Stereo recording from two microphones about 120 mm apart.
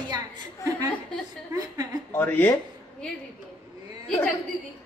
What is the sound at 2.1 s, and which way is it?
Speech, 15° left (ahead or behind).